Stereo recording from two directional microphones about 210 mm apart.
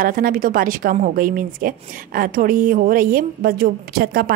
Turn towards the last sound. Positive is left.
turn(degrees=-45)  # may be behind; listen again after turning